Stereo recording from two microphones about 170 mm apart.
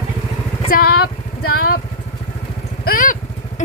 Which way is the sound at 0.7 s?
60° left (ahead or behind).